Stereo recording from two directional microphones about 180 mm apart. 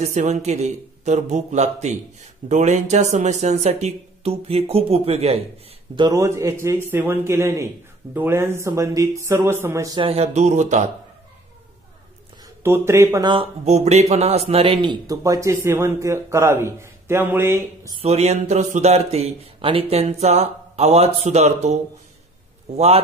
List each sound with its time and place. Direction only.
0.0 s a man's voice: 40° right (ahead or behind)
5.9 s a man's voice: 20° right (ahead or behind)
10.0 s a man's voice: 35° right (ahead or behind)
12.6 s a man's voice: 15° right (ahead or behind)
13.3 s a man's voice: 35° right (ahead or behind); by 17.9 s 15° right (ahead or behind)
17.9 s a man's voice: 35° right (ahead or behind)
22.8 s a man's voice: 35° right (ahead or behind)